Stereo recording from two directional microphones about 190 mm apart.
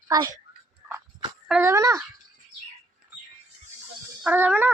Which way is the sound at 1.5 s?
15° right (ahead or behind).